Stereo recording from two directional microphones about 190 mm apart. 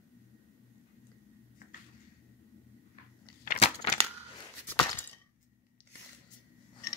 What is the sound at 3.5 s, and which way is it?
Crushing, 35° left (ahead or behind).